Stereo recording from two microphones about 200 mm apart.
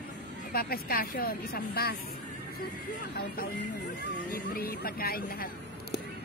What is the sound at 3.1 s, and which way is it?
A woman's voice, 55° left (ahead or behind).